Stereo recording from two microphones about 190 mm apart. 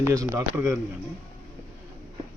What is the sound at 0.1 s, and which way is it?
Speech, 15° right (ahead or behind).